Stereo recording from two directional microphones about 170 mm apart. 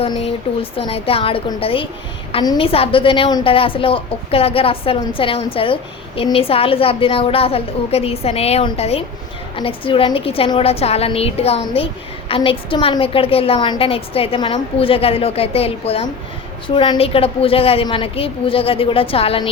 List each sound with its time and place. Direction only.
0.0 s a woman's voice: 35° left (ahead or behind)